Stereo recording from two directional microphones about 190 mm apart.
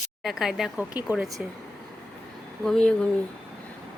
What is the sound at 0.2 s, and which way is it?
Speech, centre (ahead or behind).